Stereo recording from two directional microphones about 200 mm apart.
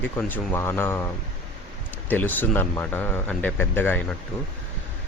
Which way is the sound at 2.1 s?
10° left (ahead or behind).